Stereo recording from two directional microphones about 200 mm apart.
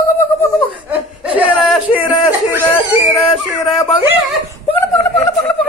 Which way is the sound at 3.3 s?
25° left (ahead or behind).